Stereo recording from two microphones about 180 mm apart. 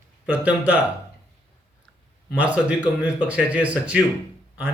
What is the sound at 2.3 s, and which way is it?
Speech, 10° right (ahead or behind).